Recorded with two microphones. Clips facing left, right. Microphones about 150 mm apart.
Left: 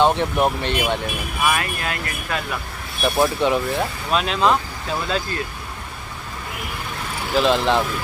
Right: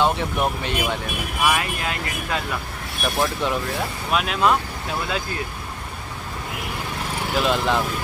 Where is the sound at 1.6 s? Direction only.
15° right (ahead or behind).